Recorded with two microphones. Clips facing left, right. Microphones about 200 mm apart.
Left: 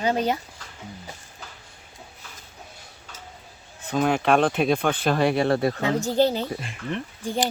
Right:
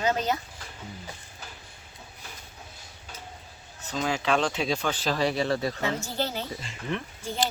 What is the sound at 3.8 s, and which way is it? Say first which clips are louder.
Speech: left 6 dB; 55° left (ahead or behind).